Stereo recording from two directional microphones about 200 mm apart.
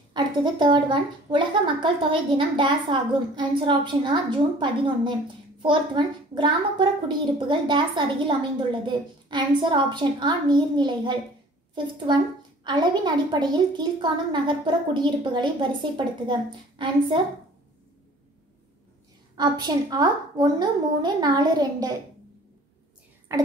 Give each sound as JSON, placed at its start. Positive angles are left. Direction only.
{"t": 0.1, "sound": "a woman's voice", "side_deg": -20}
{"t": 19.3, "sound": "a woman's voice", "side_deg": -20}